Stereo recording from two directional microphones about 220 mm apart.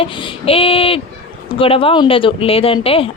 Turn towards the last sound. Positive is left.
turn(degrees=25)  # may be behind; listen again after turning